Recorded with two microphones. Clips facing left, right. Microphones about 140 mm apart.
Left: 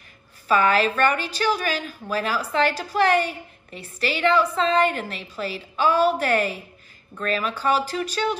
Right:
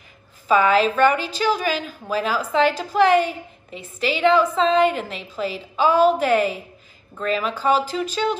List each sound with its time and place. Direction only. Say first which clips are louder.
0.5 s a woman's voice: right 3 dB; 20° right (ahead or behind)